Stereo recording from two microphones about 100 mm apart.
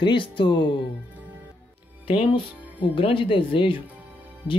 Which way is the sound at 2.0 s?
65° left (ahead or behind).